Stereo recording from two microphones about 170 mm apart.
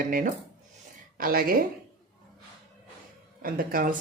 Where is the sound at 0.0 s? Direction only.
55° right (ahead or behind).